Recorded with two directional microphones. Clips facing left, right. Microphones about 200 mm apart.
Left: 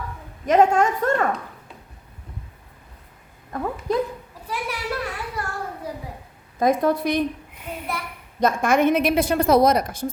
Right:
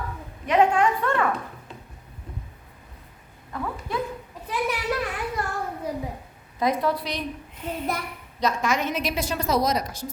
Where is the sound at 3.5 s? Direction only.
45° left (ahead or behind).